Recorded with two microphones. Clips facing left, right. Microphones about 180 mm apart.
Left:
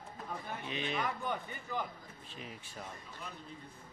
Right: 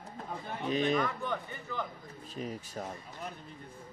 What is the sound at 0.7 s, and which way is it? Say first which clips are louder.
Speech: right 11 dB; 40° right (ahead or behind).